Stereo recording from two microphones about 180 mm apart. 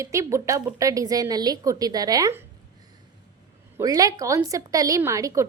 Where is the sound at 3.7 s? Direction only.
20° right (ahead or behind).